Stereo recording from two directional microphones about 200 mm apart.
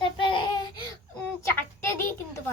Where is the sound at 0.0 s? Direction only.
25° left (ahead or behind).